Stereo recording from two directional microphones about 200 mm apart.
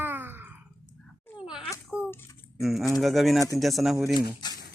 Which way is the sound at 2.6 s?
Centre (ahead or behind).